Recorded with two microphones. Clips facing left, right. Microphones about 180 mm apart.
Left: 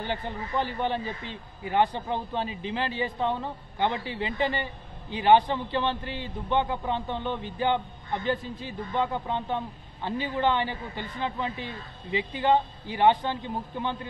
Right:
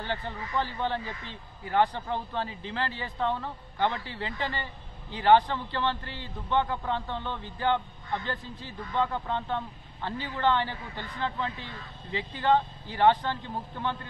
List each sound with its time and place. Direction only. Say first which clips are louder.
0.0 s a man's voice: left 2 dB; 15° left (ahead or behind)